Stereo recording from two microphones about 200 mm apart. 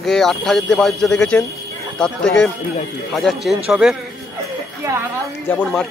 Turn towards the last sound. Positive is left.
turn(degrees=5)  # may be behind; listen again after turning